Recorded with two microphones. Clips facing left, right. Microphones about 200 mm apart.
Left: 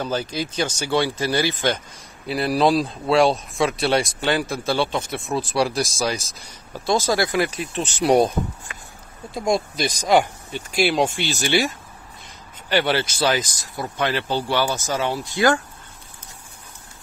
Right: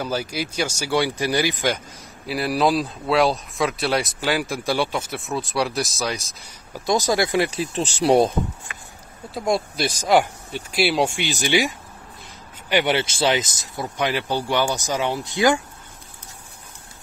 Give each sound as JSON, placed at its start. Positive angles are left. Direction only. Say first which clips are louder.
{"t": 0.0, "sound": "speech", "louder": "left 1 dB", "side_deg": -10}
{"t": 2.2, "sound": "speech", "louder": "left 2 dB", "side_deg": -5}
{"t": 6.7, "sound": "speech", "louder": "even", "side_deg": -15}
{"t": 9.3, "sound": "speech", "louder": "left 1 dB", "side_deg": -5}
{"t": 12.6, "sound": "speech", "louder": "even", "side_deg": -15}